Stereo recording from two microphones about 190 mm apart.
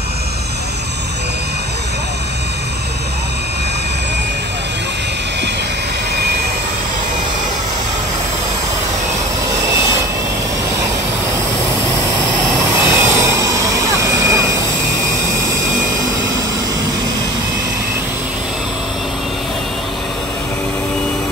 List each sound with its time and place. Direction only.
12.7 s vehicle: 15° right (ahead or behind)